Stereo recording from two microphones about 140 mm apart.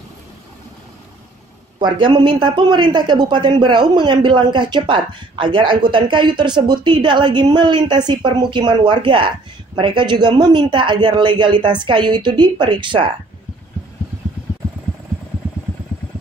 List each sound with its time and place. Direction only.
1.8 s speech: 35° right (ahead or behind)